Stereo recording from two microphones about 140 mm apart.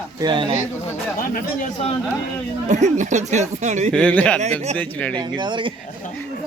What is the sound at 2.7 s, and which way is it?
Speech, 55° right (ahead or behind).